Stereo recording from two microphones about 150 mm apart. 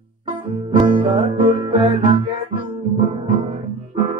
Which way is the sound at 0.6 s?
35° right (ahead or behind).